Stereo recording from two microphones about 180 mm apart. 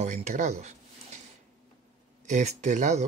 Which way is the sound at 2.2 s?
40° right (ahead or behind).